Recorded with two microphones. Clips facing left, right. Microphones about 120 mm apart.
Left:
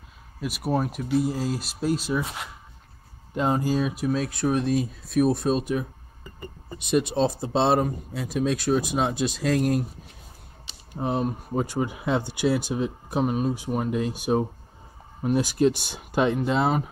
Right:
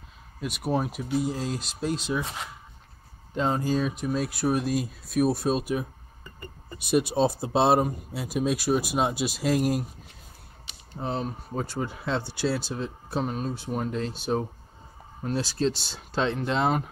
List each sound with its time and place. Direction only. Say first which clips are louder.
0.4 s speech: left 2 dB; centre (ahead or behind)
6.9 s speech: even; 10° right (ahead or behind)
11.0 s speech: left 4 dB; 15° left (ahead or behind)